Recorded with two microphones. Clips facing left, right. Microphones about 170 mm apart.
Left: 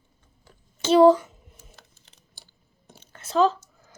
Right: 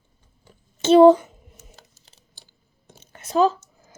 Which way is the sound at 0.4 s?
25° right (ahead or behind).